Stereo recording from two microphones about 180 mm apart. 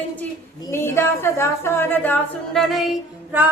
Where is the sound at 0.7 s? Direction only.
15° left (ahead or behind).